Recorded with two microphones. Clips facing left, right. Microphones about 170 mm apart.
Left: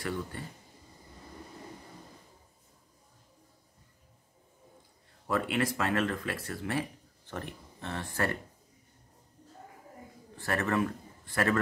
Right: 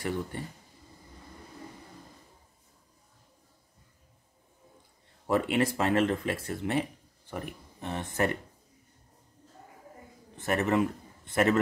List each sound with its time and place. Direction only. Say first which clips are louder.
0.0 s speech: right 3 dB; 20° right (ahead or behind)
5.2 s speech: right 4 dB; 25° right (ahead or behind)
10.3 s a man's voice: right 3 dB; 20° right (ahead or behind)